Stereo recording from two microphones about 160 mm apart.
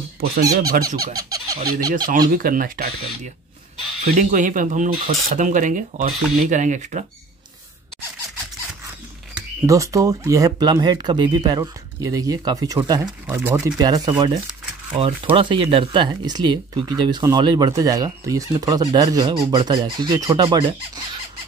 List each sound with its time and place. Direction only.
0.6 s speech: 70° right (ahead or behind)
0.8 s fowl: 25° right (ahead or behind)
1.7 s speech: 25° right (ahead or behind)
2.0 s speech: 65° right (ahead or behind)
4.0 s speech: 55° right (ahead or behind)
9.7 s speech: 20° right (ahead or behind)
13.3 s speech: 10° right (ahead or behind)
13.7 s speech: 25° right (ahead or behind)